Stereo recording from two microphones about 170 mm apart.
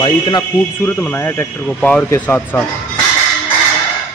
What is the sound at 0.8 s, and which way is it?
Speech, 10° left (ahead or behind).